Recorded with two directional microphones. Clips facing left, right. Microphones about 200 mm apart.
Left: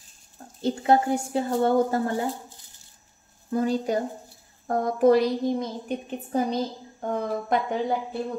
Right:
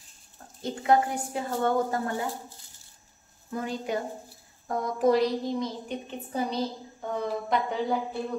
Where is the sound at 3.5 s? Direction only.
35° left (ahead or behind).